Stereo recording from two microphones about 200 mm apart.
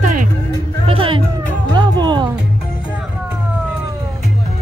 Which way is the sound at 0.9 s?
25° right (ahead or behind).